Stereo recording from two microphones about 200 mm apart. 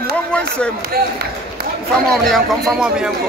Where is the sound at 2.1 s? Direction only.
Centre (ahead or behind).